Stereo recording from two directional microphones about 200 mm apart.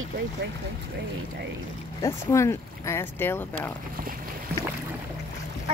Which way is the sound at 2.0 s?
15° left (ahead or behind).